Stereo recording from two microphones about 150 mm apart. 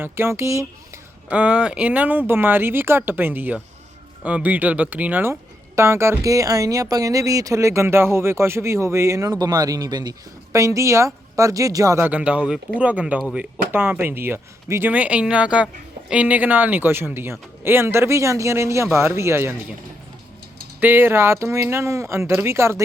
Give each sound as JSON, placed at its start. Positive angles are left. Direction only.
{"t": 0.0, "sound": "speech", "side_deg": -15}
{"t": 1.3, "sound": "speech", "side_deg": -5}
{"t": 20.8, "sound": "speech", "side_deg": -15}